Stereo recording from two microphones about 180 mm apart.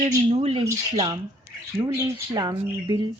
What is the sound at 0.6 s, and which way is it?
Speech, 20° right (ahead or behind).